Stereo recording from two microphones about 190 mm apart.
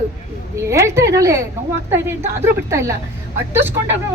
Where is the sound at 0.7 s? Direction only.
15° right (ahead or behind).